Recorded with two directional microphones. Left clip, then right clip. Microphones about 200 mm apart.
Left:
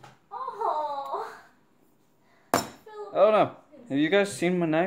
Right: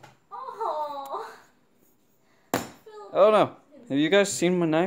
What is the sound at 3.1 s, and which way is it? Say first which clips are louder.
Speech: right 2 dB; 35° right (ahead or behind).